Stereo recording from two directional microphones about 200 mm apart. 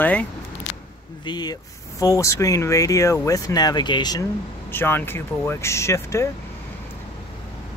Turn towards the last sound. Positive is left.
turn(degrees=15)  # may be behind; listen again after turning